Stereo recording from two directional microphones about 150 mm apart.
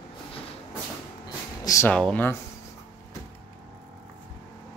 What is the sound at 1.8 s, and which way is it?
Speech, 10° left (ahead or behind).